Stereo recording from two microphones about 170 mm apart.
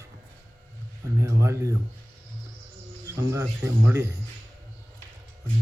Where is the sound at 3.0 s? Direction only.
20° right (ahead or behind).